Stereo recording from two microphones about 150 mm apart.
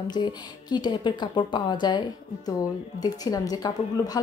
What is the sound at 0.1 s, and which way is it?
A woman's voice, 30° left (ahead or behind).